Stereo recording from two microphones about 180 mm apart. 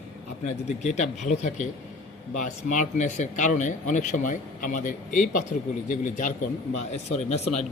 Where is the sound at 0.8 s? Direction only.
40° left (ahead or behind).